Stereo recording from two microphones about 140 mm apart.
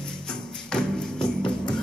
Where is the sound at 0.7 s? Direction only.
5° left (ahead or behind).